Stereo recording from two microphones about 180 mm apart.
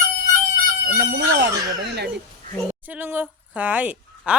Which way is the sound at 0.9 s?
70° right (ahead or behind).